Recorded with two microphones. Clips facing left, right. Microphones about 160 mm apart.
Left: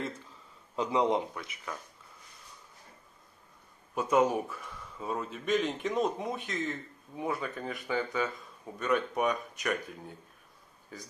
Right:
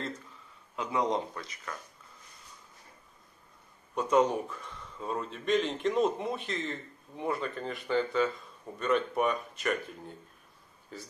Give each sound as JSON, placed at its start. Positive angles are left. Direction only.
{"t": 0.7, "sound": "a man's voice", "side_deg": 20}
{"t": 3.9, "sound": "a man's voice", "side_deg": 5}